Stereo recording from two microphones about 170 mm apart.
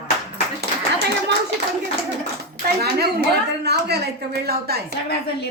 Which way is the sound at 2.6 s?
70° right (ahead or behind).